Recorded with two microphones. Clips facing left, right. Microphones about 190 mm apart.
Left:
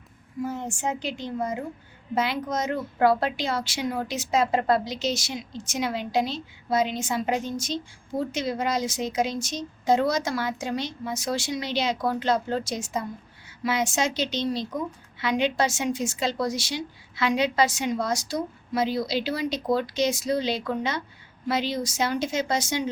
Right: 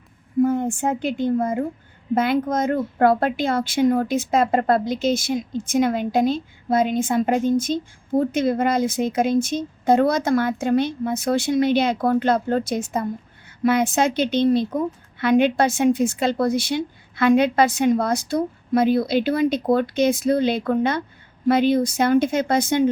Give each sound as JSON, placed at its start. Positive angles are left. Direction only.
{"t": 0.3, "sound": "a woman's voice", "side_deg": -55}